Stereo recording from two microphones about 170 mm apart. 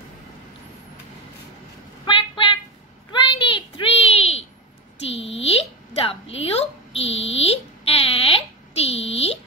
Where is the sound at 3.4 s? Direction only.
30° left (ahead or behind).